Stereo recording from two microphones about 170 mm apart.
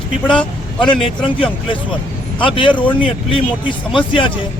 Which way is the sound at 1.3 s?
30° left (ahead or behind).